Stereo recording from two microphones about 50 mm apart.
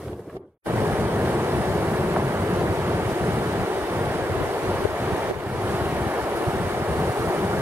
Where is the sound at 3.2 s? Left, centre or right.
Right.